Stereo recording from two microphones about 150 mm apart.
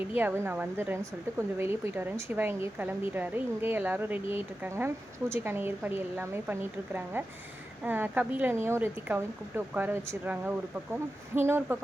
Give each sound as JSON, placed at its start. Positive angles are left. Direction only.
{"t": 0.2, "sound": "speech", "side_deg": -15}